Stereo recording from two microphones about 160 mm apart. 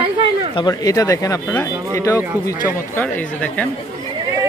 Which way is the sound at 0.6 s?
25° left (ahead or behind).